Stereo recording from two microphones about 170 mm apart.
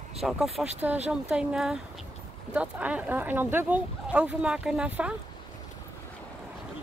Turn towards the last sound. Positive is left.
turn(degrees=-5)  # may be behind; listen again after turning